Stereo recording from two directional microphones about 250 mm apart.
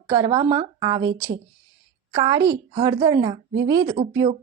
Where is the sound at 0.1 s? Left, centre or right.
Centre.